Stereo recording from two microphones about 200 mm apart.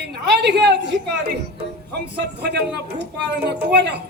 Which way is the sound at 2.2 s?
55° right (ahead or behind).